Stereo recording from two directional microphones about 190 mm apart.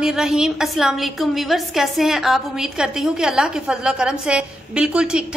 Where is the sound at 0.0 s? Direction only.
5° right (ahead or behind).